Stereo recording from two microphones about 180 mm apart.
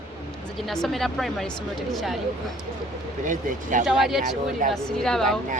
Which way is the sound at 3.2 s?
45° right (ahead or behind).